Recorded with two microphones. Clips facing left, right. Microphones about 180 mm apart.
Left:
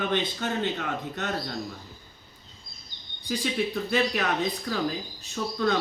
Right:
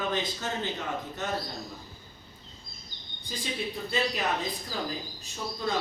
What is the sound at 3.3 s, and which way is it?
Speech, 75° left (ahead or behind).